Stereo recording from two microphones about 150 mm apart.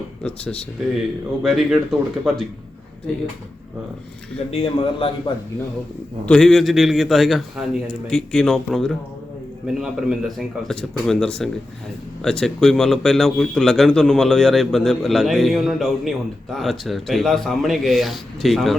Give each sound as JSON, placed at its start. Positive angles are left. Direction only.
{"t": 0.2, "sound": "a man's voice", "side_deg": 10}
{"t": 4.5, "sound": "a man's voice", "side_deg": 40}
{"t": 6.2, "sound": "a man's voice", "side_deg": 5}